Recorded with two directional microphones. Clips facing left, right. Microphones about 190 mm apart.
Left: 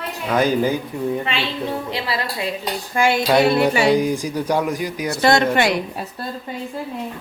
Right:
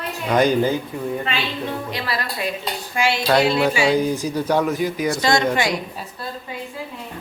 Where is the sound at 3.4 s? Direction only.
55° left (ahead or behind).